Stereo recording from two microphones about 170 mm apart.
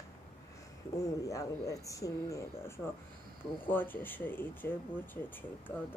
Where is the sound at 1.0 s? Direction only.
20° left (ahead or behind).